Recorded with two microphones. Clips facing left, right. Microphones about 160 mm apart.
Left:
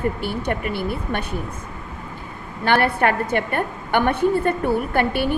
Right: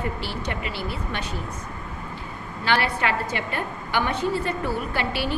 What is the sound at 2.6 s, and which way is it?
A woman's voice, 55° left (ahead or behind).